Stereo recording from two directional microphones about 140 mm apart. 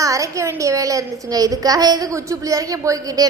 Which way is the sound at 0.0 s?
20° right (ahead or behind).